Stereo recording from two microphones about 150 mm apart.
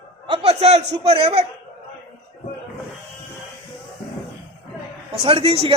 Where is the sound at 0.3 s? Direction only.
45° right (ahead or behind).